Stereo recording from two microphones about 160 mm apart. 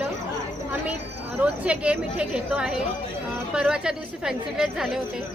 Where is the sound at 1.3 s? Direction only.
10° right (ahead or behind).